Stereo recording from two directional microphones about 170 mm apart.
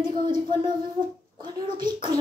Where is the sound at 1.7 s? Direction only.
25° right (ahead or behind).